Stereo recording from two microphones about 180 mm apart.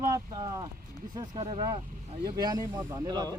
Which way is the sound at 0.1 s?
20° right (ahead or behind).